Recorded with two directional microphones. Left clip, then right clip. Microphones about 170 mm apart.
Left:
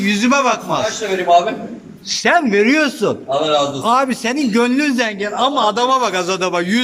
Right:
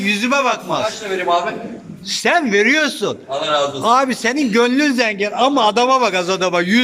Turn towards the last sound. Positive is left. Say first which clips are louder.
# right 1 dB
turn(degrees=0)  # may be behind; listen again after turning